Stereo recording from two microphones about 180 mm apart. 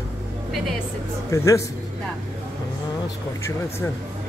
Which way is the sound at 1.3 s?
15° left (ahead or behind).